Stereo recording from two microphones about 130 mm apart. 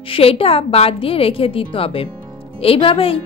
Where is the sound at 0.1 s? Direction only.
45° left (ahead or behind).